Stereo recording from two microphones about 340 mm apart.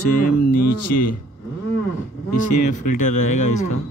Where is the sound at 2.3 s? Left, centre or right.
Left.